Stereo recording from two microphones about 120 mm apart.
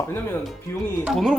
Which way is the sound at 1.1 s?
Centre (ahead or behind).